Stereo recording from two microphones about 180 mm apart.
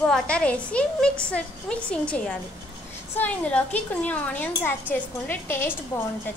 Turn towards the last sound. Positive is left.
turn(degrees=15)  # may be behind; listen again after turning